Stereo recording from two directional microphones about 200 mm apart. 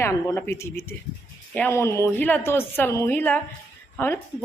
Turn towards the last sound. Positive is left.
turn(degrees=10)  # may be behind; listen again after turning